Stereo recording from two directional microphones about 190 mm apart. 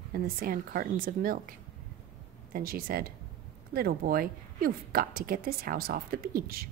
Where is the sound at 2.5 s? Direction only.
50° right (ahead or behind).